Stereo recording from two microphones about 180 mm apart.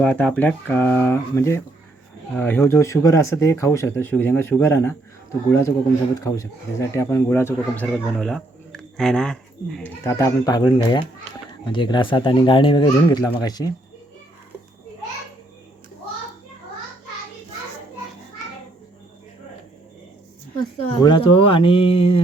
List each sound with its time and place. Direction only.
0.0 s speech: 5° left (ahead or behind)
10.0 s speech: 15° left (ahead or behind)
21.0 s speech: 25° left (ahead or behind)